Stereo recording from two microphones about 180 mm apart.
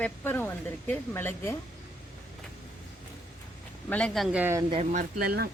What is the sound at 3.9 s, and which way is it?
Speech, 5° left (ahead or behind).